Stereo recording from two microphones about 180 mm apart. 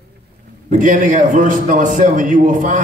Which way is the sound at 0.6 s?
45° right (ahead or behind).